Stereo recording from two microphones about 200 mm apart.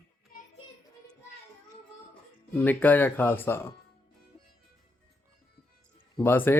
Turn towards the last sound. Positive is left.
turn(degrees=10)  # may be behind; listen again after turning